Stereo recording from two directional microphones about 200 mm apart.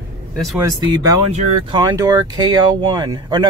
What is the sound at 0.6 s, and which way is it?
Speech, 15° right (ahead or behind).